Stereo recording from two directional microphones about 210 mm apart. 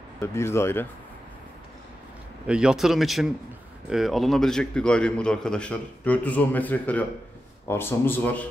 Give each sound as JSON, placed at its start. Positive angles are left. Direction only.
{"t": 0.2, "sound": "speech", "side_deg": 10}
{"t": 2.4, "sound": "a man's voice", "side_deg": -5}